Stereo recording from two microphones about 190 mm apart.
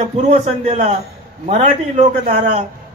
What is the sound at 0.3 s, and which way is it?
A man's voice, 40° right (ahead or behind).